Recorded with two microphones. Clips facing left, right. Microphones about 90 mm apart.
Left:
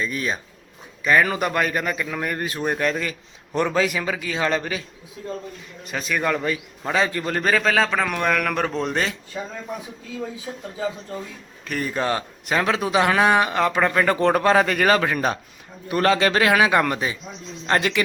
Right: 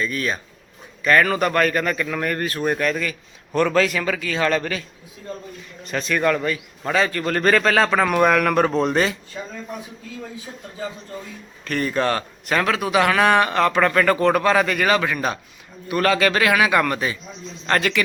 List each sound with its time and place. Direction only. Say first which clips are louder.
0.0 s speech: right 1 dB; 20° left (ahead or behind)
5.8 s a man's voice: right 4 dB; 10° left (ahead or behind)
11.6 s speech: right 3 dB; 10° left (ahead or behind)